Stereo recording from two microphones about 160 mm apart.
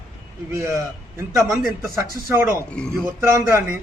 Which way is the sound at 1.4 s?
Centre (ahead or behind).